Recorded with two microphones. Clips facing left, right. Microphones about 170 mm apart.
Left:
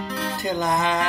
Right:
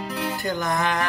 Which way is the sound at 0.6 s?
20° left (ahead or behind).